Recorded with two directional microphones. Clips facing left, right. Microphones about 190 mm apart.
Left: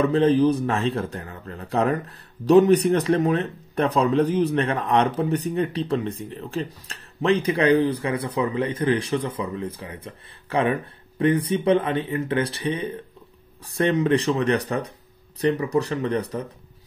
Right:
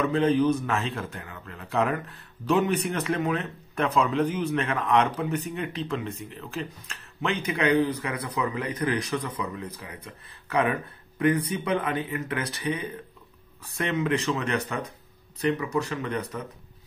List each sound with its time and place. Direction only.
0.0 s a man's voice: 35° left (ahead or behind)